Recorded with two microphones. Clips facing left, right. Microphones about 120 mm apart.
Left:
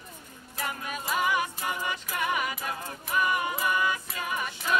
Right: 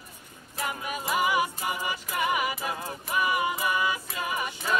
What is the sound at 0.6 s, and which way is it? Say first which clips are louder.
Music: right 2 dB; 5° right (ahead or behind).